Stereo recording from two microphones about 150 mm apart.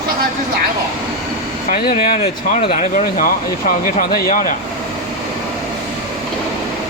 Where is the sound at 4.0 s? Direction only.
70° left (ahead or behind).